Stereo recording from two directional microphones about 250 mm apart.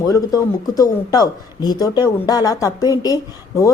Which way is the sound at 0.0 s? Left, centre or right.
Centre.